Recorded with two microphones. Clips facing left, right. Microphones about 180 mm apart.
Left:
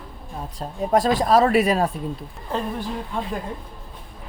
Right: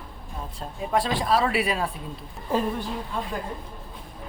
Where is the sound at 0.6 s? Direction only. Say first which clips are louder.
Left 5 dB; 45° left (ahead or behind).